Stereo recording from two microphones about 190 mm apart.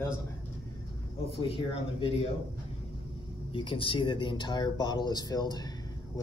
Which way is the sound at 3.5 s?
25° left (ahead or behind).